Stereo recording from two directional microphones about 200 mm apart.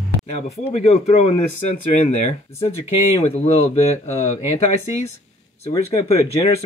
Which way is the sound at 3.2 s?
35° left (ahead or behind).